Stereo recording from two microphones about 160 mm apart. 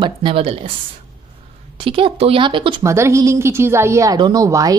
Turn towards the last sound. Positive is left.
turn(degrees=-20)  # may be behind; listen again after turning